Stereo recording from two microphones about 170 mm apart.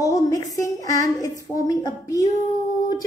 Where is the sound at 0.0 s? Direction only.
20° left (ahead or behind).